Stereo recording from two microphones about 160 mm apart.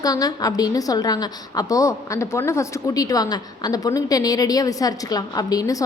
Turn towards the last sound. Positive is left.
turn(degrees=20)  # may be behind; listen again after turning